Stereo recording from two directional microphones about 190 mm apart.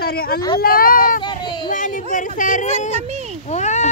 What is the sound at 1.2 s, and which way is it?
Child singing, 25° left (ahead or behind).